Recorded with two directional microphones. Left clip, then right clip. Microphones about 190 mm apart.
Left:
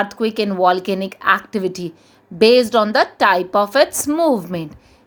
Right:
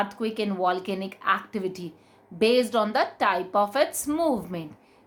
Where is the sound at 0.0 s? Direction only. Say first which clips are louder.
Left 9 dB; 40° left (ahead or behind).